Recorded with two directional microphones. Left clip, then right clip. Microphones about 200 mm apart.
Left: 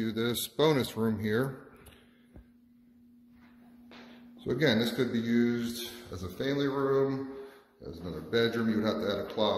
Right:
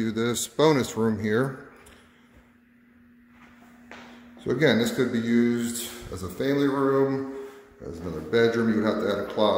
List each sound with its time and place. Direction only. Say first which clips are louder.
0.0 s speech: right 5 dB; 5° right (ahead or behind)
4.4 s speech: right 6 dB; 5° right (ahead or behind)
8.3 s speech: right 7 dB; 5° right (ahead or behind)